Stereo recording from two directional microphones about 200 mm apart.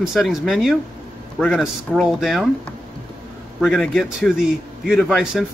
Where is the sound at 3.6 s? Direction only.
Centre (ahead or behind).